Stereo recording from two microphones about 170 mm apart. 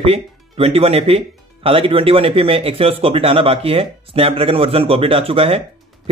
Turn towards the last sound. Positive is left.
turn(degrees=-35)  # may be behind; listen again after turning